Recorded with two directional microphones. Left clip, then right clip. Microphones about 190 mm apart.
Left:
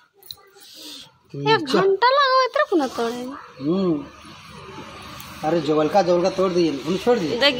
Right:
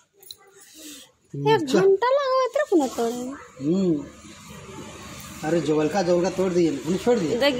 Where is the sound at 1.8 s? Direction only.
20° right (ahead or behind).